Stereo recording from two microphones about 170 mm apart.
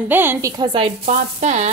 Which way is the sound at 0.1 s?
10° right (ahead or behind).